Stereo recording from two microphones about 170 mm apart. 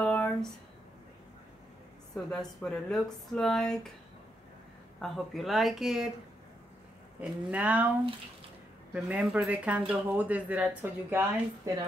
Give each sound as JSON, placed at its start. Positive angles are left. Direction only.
{"t": 0.0, "sound": "a sound", "side_deg": 5}
{"t": 2.3, "sound": "speech", "side_deg": 5}
{"t": 5.0, "sound": "speech", "side_deg": 0}
{"t": 7.2, "sound": "speech", "side_deg": -10}
{"t": 8.9, "sound": "speech", "side_deg": -5}